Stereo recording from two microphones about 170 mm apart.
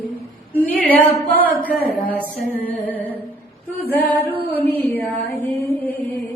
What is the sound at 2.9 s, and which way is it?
Singing, 10° left (ahead or behind).